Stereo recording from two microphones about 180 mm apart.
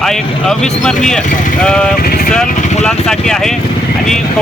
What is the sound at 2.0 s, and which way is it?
Speech, 55° left (ahead or behind).